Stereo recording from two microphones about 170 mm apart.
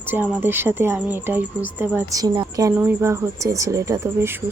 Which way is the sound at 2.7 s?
10° right (ahead or behind).